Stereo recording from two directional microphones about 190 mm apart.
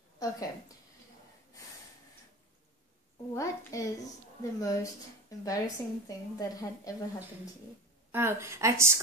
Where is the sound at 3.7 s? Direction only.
15° left (ahead or behind).